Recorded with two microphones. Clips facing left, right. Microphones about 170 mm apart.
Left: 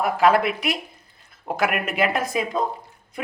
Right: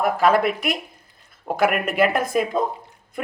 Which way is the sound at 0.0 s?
45° right (ahead or behind).